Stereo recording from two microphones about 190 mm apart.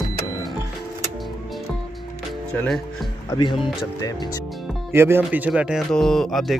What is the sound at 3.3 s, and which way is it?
Speech, 25° left (ahead or behind).